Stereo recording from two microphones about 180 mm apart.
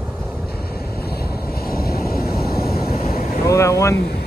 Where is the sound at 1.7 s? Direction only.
55° left (ahead or behind).